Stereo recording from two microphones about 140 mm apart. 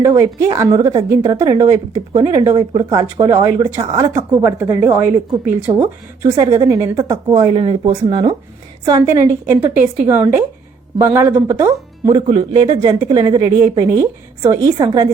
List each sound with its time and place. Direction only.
0.0 s a woman's voice: 20° right (ahead or behind)
5.7 s speech: 25° right (ahead or behind)
7.5 s speech: 40° right (ahead or behind)